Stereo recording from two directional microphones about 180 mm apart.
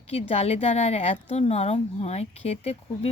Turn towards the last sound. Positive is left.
turn(degrees=35)  # may be behind; listen again after turning